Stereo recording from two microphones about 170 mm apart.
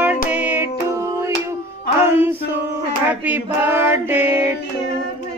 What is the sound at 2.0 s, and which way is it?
Music, 15° right (ahead or behind).